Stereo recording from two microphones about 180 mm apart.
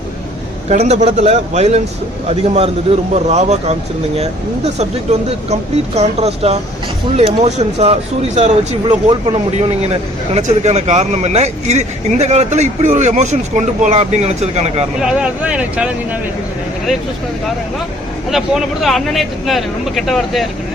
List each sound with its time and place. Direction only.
0.7 s speech: 40° right (ahead or behind)
8.9 s speech: 25° right (ahead or behind)
15.0 s speech: 5° right (ahead or behind)
18.3 s speech: centre (ahead or behind)